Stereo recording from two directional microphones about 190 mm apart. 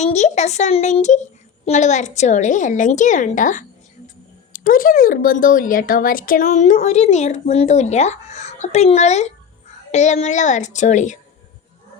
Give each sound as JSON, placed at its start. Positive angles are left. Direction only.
{"t": 0.0, "sound": "speech", "side_deg": 35}